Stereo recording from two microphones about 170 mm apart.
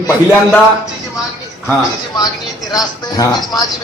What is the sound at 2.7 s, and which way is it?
Speech, 20° left (ahead or behind).